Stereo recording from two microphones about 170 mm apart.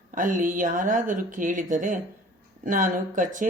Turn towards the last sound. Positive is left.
turn(degrees=-50)  # may be behind; listen again after turning